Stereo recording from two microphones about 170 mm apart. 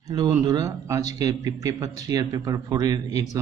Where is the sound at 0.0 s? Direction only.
25° right (ahead or behind).